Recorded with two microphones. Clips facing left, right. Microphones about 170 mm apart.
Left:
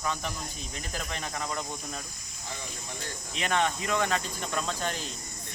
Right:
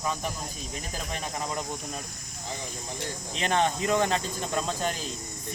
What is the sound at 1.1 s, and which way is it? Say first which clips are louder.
Cricket: right 3 dB; 20° right (ahead or behind).